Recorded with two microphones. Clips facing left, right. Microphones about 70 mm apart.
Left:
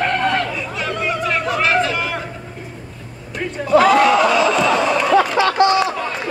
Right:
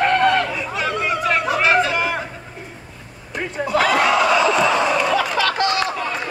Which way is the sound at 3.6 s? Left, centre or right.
Centre.